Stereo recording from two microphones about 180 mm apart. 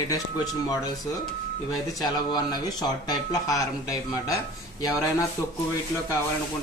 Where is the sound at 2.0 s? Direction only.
25° left (ahead or behind).